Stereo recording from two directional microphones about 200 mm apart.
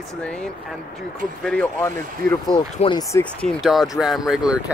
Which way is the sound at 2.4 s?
25° left (ahead or behind).